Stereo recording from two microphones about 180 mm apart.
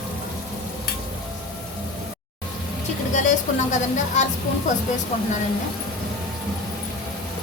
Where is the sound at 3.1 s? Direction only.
45° left (ahead or behind).